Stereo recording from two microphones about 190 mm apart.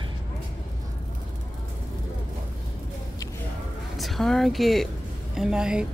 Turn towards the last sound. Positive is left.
turn(degrees=-5)  # may be behind; listen again after turning